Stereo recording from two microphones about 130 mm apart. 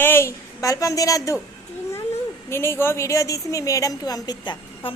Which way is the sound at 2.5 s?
20° left (ahead or behind).